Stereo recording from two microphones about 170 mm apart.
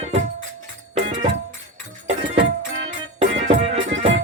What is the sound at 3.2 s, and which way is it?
Music, 35° right (ahead or behind).